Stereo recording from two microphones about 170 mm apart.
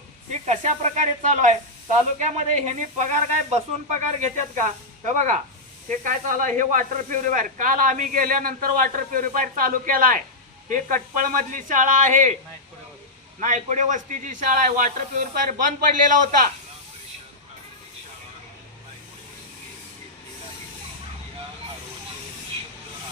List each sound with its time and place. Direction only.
0.4 s speech: 45° right (ahead or behind)
13.4 s speech: 45° right (ahead or behind)